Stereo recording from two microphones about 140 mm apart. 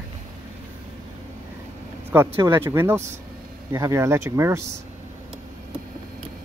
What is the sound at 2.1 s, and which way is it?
Speech, 15° right (ahead or behind).